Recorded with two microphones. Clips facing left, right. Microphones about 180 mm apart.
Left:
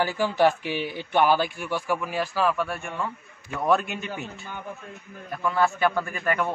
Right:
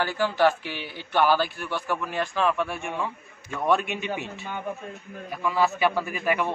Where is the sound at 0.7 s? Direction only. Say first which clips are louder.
Left 7 dB; 45° left (ahead or behind).